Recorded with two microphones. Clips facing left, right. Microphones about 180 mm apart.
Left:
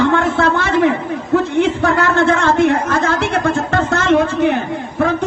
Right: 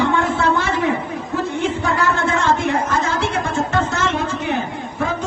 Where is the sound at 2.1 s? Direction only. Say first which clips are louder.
Left 5 dB; 65° left (ahead or behind).